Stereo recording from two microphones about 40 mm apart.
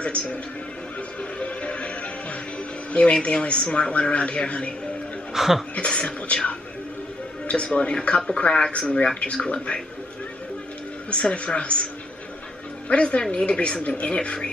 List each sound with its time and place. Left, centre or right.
0.0 s speech: left
1.4 s music: left
2.9 s speech: left
5.3 s speech: centre
5.8 s speech: left
11.1 s a woman's voice: left